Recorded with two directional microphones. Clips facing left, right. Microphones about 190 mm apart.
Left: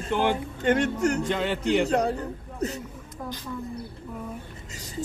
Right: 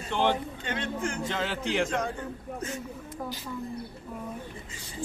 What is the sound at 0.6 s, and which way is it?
Speech, 45° left (ahead or behind).